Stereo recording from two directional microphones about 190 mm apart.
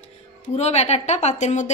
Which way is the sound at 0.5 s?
35° left (ahead or behind).